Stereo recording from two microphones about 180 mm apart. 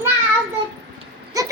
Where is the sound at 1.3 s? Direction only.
20° right (ahead or behind).